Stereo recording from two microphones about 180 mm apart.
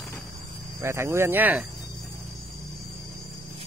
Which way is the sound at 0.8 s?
15° right (ahead or behind).